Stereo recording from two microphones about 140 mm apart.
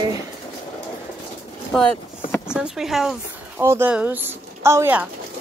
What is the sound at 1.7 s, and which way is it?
Speech, 5° left (ahead or behind).